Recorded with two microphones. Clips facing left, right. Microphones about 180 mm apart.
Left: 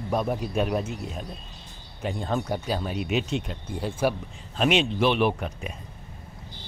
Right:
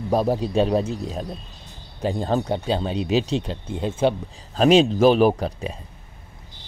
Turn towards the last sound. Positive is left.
turn(degrees=-35)  # may be behind; listen again after turning